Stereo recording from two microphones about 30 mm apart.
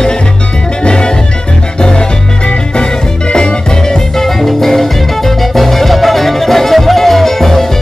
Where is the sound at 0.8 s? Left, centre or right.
Left.